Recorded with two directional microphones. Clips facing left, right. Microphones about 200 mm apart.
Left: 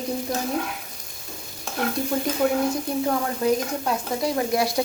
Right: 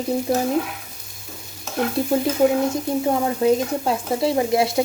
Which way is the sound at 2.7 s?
25° right (ahead or behind).